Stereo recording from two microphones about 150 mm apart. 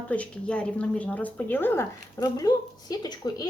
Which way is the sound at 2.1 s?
25° left (ahead or behind).